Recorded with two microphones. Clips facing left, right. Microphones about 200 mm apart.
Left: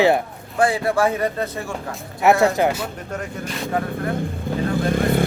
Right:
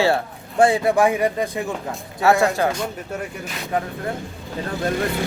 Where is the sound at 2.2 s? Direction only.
20° left (ahead or behind).